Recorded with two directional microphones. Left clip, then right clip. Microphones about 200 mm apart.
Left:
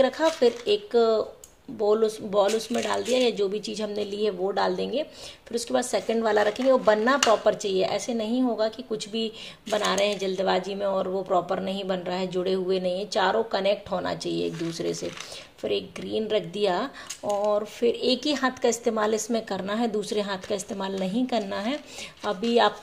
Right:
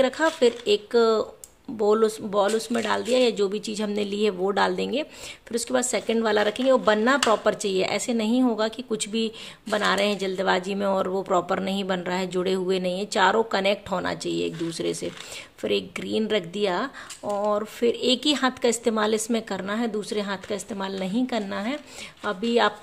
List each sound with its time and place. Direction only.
0.0 s a woman's voice: 15° right (ahead or behind)